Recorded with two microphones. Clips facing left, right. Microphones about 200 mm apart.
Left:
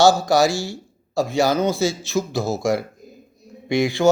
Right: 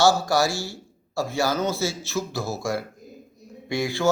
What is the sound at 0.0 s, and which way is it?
Speech, 15° left (ahead or behind).